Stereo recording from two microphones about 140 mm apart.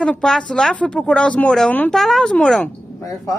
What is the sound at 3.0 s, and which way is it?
Speech, 25° left (ahead or behind).